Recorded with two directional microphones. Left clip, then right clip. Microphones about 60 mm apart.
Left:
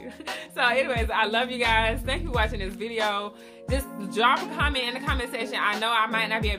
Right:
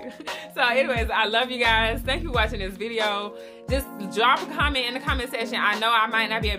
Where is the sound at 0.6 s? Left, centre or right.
Centre.